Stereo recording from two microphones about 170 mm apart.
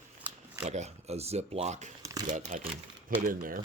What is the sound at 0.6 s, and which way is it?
Speech, 40° right (ahead or behind).